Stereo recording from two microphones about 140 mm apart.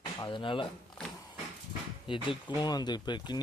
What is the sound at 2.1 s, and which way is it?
Speech, 35° left (ahead or behind).